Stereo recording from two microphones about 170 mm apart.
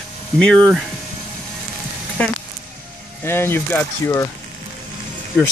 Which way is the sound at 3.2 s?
15° left (ahead or behind).